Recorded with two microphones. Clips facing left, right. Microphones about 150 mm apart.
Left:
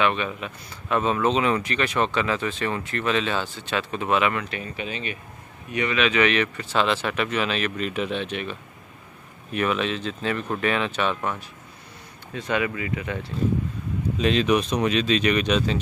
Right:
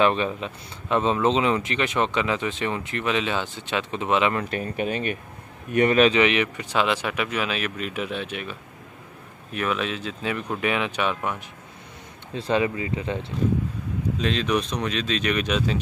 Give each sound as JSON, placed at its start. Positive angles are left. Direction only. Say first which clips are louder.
{"t": 0.0, "sound": "speech", "louder": "right 3 dB", "side_deg": -35}
{"t": 4.4, "sound": "speech", "louder": "right 4 dB", "side_deg": -45}
{"t": 6.1, "sound": "speech", "louder": "right 1 dB", "side_deg": -15}
{"t": 12.4, "sound": "speech", "louder": "right 2 dB", "side_deg": -30}
{"t": 14.1, "sound": "speech", "louder": "left 4 dB", "side_deg": 5}